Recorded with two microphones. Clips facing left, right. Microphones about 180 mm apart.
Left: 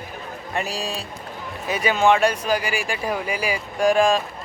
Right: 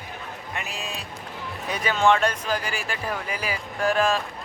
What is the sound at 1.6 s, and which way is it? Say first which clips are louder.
Speech: left 3 dB; 10° left (ahead or behind).